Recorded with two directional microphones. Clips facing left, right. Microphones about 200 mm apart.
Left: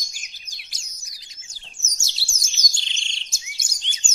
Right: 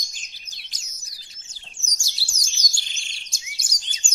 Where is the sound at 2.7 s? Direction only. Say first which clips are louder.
Left 3 dB; 25° left (ahead or behind).